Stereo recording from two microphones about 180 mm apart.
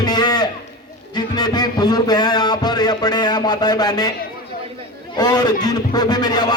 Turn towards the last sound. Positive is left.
turn(degrees=20)  # may be behind; listen again after turning